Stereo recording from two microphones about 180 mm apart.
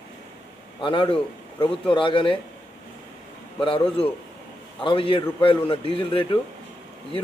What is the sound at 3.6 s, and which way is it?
A man's voice, 30° left (ahead or behind).